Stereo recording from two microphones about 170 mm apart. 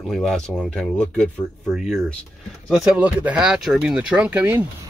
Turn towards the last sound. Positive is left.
turn(degrees=-10)  # may be behind; listen again after turning